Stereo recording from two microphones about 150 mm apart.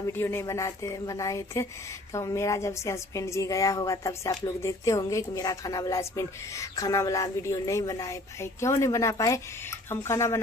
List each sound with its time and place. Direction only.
0.0 s a woman's voice: 15° left (ahead or behind)